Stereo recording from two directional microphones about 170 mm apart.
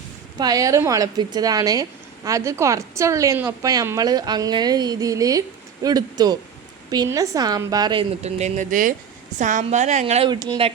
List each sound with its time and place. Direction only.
0.3 s a woman's voice: 20° right (ahead or behind)
8.2 s a woman's voice: 40° right (ahead or behind)
10.2 s a woman's voice: 25° right (ahead or behind)